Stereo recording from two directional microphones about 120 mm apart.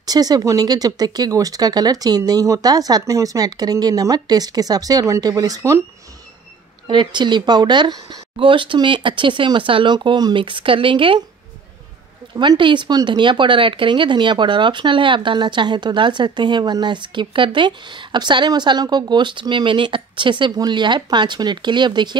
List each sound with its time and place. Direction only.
0.0 s speech: 35° right (ahead or behind)
6.9 s speech: 40° right (ahead or behind)
12.4 s speech: 40° right (ahead or behind)